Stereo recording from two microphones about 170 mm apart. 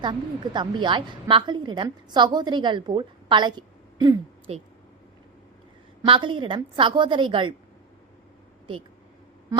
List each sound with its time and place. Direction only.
0.0 s a woman's voice: 25° right (ahead or behind)
6.1 s a woman's voice: 30° right (ahead or behind)